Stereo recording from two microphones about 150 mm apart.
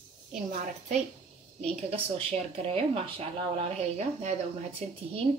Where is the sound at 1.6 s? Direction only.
40° right (ahead or behind).